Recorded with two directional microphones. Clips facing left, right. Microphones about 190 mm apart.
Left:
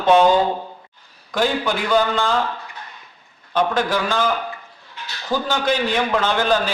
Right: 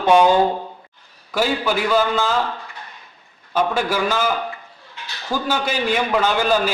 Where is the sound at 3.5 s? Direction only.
5° right (ahead or behind).